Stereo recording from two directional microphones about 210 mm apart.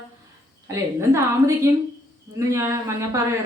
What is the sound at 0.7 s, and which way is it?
A man's voice, 15° right (ahead or behind).